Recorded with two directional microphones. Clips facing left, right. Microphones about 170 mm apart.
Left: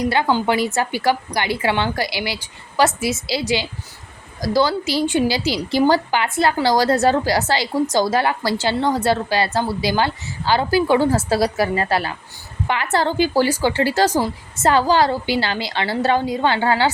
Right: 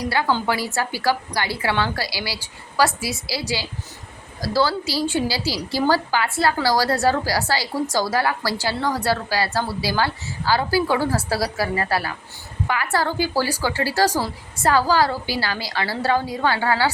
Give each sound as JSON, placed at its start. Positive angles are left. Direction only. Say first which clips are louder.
{"t": 0.1, "sound": "a woman's voice", "louder": "left 3 dB", "side_deg": 20}